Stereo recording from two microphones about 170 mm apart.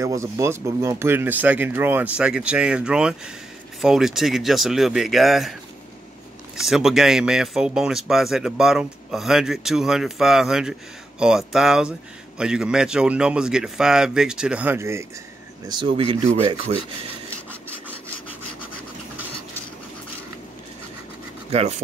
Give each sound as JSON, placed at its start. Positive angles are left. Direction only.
{"t": 0.0, "sound": "speech", "side_deg": -20}
{"t": 15.7, "sound": "speech", "side_deg": -30}
{"t": 17.5, "sound": "wood", "side_deg": -10}
{"t": 21.5, "sound": "speech", "side_deg": -35}